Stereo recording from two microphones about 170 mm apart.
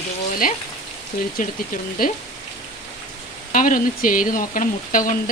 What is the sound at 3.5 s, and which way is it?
Speech, 50° left (ahead or behind).